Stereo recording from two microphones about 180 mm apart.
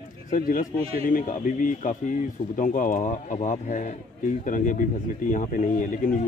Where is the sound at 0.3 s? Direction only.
45° left (ahead or behind).